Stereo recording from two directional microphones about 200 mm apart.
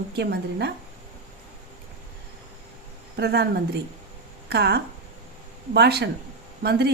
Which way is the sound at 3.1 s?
55° right (ahead or behind).